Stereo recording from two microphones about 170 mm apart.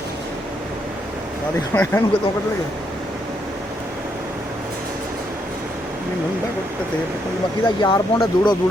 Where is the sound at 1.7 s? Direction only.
10° left (ahead or behind).